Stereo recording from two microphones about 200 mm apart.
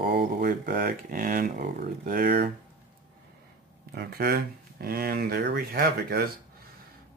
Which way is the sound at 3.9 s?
50° right (ahead or behind).